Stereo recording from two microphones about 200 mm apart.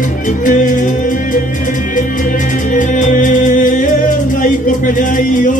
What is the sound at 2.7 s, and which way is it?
Music, 40° left (ahead or behind).